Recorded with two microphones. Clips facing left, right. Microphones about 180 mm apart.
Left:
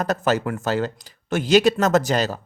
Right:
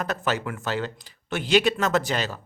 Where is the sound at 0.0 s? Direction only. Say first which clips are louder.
Left 6 dB; 40° left (ahead or behind).